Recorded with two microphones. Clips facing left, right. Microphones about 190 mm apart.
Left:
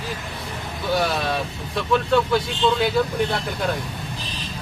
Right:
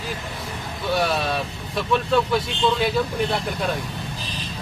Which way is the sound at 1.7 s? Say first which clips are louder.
Left 1 dB; centre (ahead or behind).